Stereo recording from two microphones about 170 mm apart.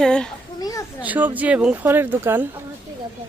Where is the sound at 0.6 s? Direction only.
20° left (ahead or behind).